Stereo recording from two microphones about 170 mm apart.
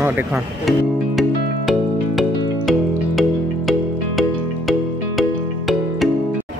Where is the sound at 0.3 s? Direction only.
Centre (ahead or behind).